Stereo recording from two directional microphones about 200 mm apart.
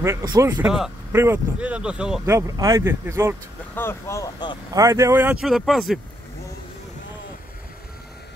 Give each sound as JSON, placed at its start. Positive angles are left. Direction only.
{"t": 0.0, "sound": "speech", "side_deg": -15}
{"t": 2.2, "sound": "speech", "side_deg": -15}
{"t": 3.7, "sound": "speech", "side_deg": 15}
{"t": 4.7, "sound": "speech", "side_deg": -15}